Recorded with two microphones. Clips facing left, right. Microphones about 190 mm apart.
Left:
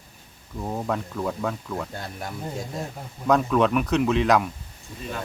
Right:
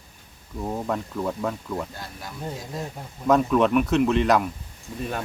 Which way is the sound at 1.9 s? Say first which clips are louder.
Left 4 dB; 55° left (ahead or behind).